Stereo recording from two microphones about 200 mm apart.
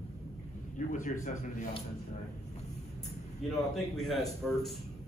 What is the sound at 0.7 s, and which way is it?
Speech, 40° left (ahead or behind).